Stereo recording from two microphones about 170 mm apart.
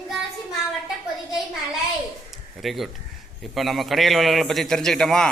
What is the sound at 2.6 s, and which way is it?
A man's voice, centre (ahead or behind).